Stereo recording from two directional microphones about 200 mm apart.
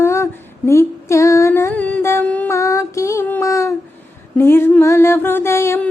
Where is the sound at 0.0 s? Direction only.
15° left (ahead or behind).